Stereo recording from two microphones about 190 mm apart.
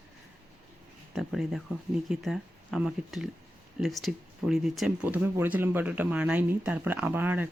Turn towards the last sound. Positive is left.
turn(degrees=-10)  # may be behind; listen again after turning